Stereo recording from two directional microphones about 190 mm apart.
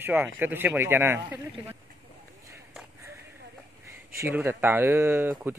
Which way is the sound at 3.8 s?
15° right (ahead or behind).